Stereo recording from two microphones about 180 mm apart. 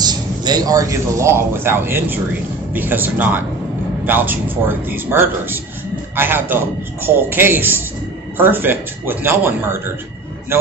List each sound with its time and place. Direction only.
0.0 s a man's voice: 20° right (ahead or behind)